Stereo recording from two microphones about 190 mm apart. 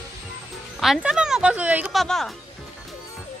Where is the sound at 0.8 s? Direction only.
5° right (ahead or behind).